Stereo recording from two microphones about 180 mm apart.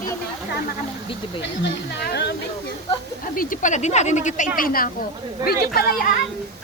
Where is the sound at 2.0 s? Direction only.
65° left (ahead or behind).